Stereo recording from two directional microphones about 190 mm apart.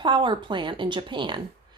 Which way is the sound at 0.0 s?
25° right (ahead or behind).